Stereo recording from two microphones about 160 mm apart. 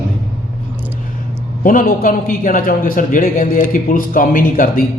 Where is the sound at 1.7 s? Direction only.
60° left (ahead or behind).